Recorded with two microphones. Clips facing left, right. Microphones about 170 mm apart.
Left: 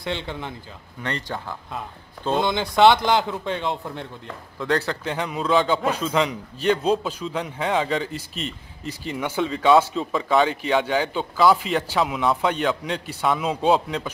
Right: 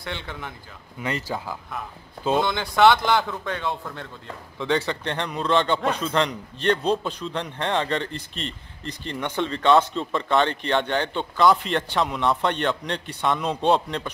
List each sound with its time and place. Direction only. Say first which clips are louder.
0.0 s speech: left 5 dB; 20° left (ahead or behind)
1.0 s speech: right 1 dB; 5° right (ahead or behind)
2.4 s speech: left 3 dB; 20° left (ahead or behind)
4.6 s a man's voice: even; centre (ahead or behind)